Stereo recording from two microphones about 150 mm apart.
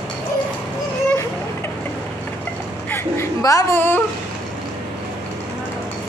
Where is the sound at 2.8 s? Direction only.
15° left (ahead or behind).